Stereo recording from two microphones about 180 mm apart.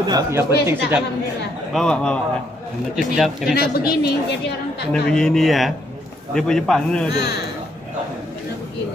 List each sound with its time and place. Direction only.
0.0 s speech: 20° right (ahead or behind)
1.7 s a man's voice: 5° left (ahead or behind)
3.5 s a woman's voice: 60° left (ahead or behind)
4.9 s a man's voice: 5° left (ahead or behind)